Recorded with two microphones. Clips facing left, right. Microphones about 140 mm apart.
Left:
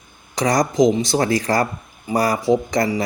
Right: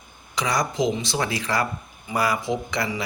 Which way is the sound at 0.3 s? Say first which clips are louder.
Left 7 dB; 40° left (ahead or behind).